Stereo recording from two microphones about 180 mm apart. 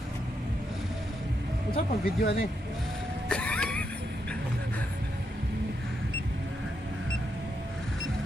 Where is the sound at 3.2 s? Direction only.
5° left (ahead or behind).